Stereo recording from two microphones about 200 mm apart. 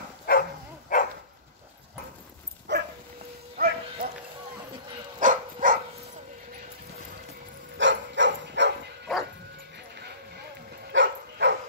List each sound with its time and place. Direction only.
0.3 s dog: 45° left (ahead or behind)
2.7 s dog: 60° right (ahead or behind)
3.5 s a sound: 50° right (ahead or behind)
5.2 s dog: 40° right (ahead or behind)
7.7 s dog: 65° right (ahead or behind)
9.1 s dog: centre (ahead or behind)
9.9 s music: 55° right (ahead or behind)
10.9 s dog: 65° right (ahead or behind)